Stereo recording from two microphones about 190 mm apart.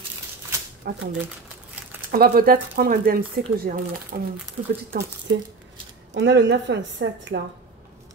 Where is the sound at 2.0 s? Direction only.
50° right (ahead or behind).